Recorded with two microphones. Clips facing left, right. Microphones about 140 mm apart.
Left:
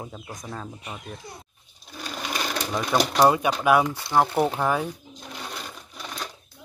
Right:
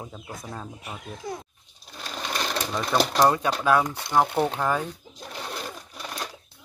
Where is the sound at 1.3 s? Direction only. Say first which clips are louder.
Right 9 dB; 90° right.